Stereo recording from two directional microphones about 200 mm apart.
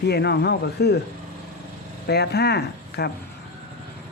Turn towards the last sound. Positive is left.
turn(degrees=55)  # may be behind; listen again after turning